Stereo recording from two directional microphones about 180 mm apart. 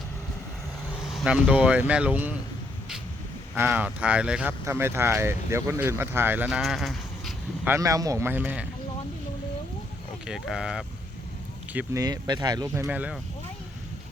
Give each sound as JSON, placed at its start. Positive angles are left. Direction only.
{"t": 1.0, "sound": "speech", "side_deg": -5}
{"t": 3.5, "sound": "speech", "side_deg": -10}
{"t": 7.7, "sound": "speech", "side_deg": -20}
{"t": 10.2, "sound": "speech", "side_deg": -5}
{"t": 11.9, "sound": "speech", "side_deg": -20}